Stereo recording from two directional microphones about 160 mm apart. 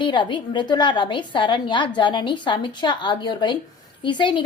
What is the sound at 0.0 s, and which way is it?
A woman's voice, 30° left (ahead or behind).